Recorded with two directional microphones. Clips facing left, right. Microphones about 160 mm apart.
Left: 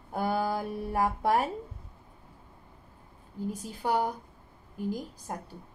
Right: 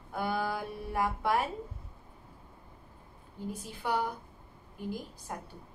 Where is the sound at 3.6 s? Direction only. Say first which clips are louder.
Left 3 dB; 40° left (ahead or behind).